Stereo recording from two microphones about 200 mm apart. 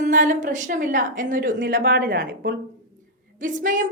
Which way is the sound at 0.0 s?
40° right (ahead or behind).